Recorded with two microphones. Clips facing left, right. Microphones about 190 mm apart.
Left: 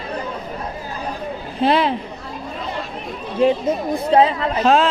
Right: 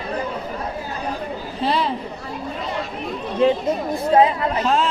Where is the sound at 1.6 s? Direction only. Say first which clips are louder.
Left 5 dB; 65° left (ahead or behind).